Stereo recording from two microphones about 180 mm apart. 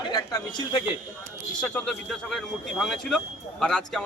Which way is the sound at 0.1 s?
20° left (ahead or behind).